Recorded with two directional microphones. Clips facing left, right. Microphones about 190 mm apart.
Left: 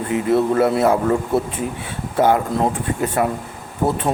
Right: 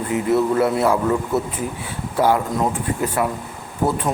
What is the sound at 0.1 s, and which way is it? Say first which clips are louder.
Speech: left 1 dB; 25° left (ahead or behind).